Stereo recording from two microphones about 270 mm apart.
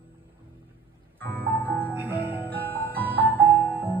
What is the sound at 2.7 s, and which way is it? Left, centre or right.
Music, centre.